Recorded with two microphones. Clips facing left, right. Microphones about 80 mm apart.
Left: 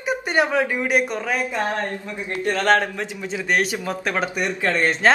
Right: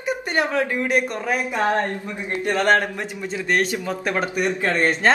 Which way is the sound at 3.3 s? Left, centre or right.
Centre.